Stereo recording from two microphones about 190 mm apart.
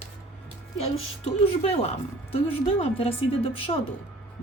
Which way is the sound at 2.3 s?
30° left (ahead or behind).